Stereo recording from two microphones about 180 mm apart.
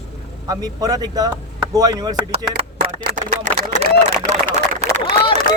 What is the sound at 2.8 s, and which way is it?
Speech, 45° right (ahead or behind).